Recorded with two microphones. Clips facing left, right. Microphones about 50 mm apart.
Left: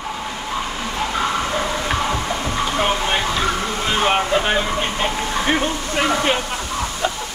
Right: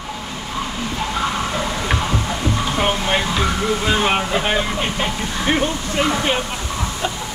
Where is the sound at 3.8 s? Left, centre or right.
Centre.